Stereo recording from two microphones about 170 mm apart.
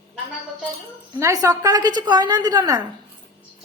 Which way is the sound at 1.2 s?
20° right (ahead or behind).